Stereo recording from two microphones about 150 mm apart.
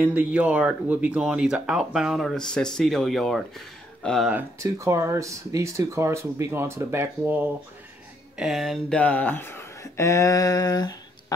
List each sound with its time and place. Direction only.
0.0 s speech: 10° right (ahead or behind)
4.3 s speech: 15° right (ahead or behind)
8.4 s speech: centre (ahead or behind); by 11.3 s 25° left (ahead or behind)